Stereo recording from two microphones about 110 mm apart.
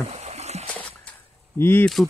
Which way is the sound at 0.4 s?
80° right.